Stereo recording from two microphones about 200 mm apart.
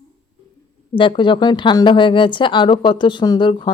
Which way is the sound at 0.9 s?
25° left (ahead or behind).